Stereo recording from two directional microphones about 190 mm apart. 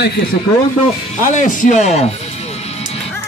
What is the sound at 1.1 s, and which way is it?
Music, 45° left (ahead or behind).